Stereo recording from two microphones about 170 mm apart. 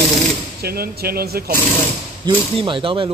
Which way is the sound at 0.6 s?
65° right (ahead or behind).